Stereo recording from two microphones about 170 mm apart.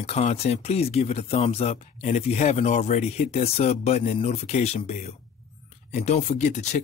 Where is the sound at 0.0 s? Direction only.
40° left (ahead or behind).